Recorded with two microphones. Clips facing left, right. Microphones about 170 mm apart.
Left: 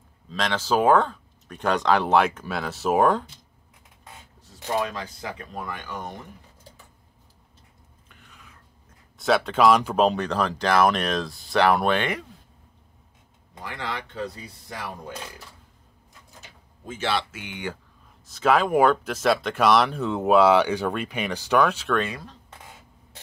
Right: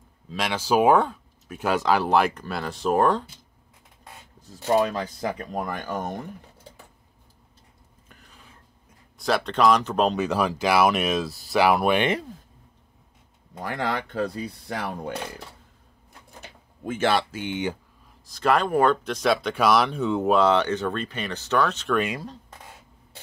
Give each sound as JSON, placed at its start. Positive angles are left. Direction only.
{"t": 0.3, "sound": "speech", "side_deg": -10}
{"t": 4.7, "sound": "speech", "side_deg": -35}
{"t": 8.1, "sound": "a sound", "side_deg": -35}
{"t": 9.2, "sound": "speech", "side_deg": 5}
{"t": 13.6, "sound": "speech", "side_deg": -45}
{"t": 16.1, "sound": "a sound", "side_deg": -60}
{"t": 17.3, "sound": "speech", "side_deg": -30}
{"t": 18.2, "sound": "speech", "side_deg": 0}